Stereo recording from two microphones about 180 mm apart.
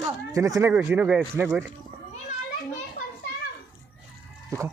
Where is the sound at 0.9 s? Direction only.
5° right (ahead or behind).